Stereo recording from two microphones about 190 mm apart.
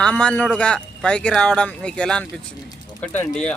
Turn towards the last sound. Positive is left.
turn(degrees=5)  # may be behind; listen again after turning